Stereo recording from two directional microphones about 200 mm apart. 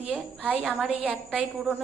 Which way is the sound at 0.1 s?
5° right (ahead or behind).